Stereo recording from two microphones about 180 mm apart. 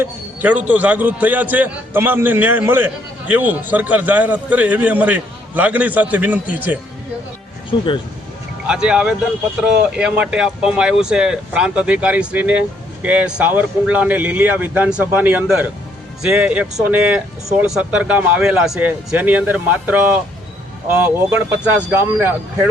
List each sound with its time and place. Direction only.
0.0 s speech: 10° right (ahead or behind)
7.7 s speech: 25° left (ahead or behind)
8.6 s speech: 5° right (ahead or behind)